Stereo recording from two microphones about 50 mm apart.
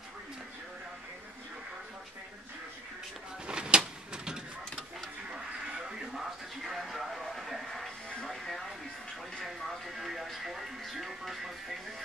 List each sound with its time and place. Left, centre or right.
3.4 s a sound: centre
5.3 s music: centre
6.6 s music: centre